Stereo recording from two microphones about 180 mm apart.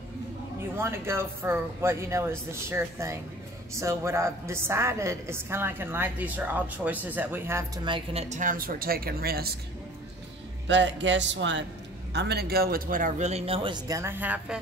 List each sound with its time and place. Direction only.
0.7 s a woman's voice: 15° right (ahead or behind)
7.8 s speech: 30° right (ahead or behind); by 9.6 s 60° right (ahead or behind)
10.7 s speech: 90° right
12.1 s a man's voice: 65° right (ahead or behind); by 14.6 s 10° right (ahead or behind)